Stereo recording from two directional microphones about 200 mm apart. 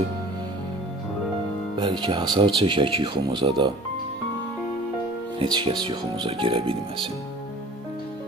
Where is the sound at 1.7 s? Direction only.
20° right (ahead or behind).